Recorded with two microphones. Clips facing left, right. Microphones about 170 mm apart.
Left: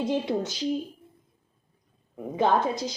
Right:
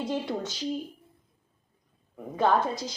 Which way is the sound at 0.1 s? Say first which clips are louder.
Left 4 dB; 20° left (ahead or behind).